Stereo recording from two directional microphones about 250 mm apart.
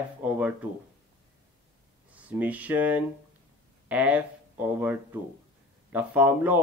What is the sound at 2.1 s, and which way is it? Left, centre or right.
Speech, centre.